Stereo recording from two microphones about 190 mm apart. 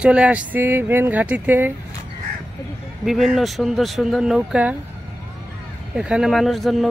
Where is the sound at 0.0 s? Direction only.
5° right (ahead or behind).